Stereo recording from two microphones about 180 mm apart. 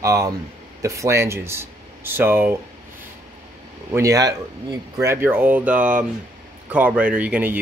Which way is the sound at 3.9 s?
20° right (ahead or behind).